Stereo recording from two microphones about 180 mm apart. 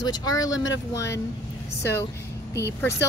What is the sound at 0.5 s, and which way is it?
Speech, 90° left.